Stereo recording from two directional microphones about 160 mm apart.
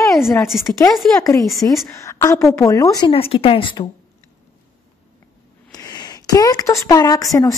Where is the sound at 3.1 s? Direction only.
35° left (ahead or behind).